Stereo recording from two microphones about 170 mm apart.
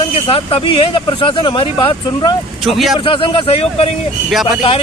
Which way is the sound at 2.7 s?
Centre (ahead or behind).